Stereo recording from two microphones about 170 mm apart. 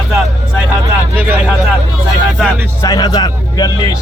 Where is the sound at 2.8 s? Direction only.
25° left (ahead or behind).